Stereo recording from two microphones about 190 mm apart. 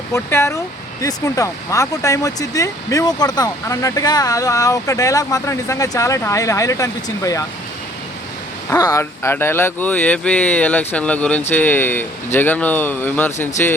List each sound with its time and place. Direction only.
0.1 s speech: 15° left (ahead or behind)
8.7 s speech: 15° left (ahead or behind)